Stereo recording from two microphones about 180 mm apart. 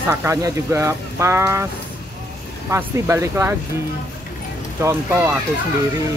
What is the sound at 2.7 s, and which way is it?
Speech, 15° right (ahead or behind).